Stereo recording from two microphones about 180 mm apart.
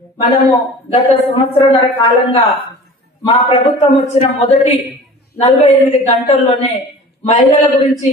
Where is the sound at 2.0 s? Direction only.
30° left (ahead or behind).